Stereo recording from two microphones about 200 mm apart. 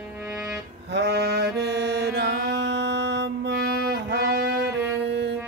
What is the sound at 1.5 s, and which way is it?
Mantra, 55° right (ahead or behind).